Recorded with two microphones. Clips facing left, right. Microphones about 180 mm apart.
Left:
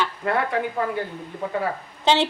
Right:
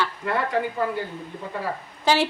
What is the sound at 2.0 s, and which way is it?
Speech, 25° left (ahead or behind).